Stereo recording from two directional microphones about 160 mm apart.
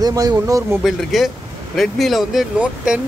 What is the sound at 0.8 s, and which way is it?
Speech, centre (ahead or behind).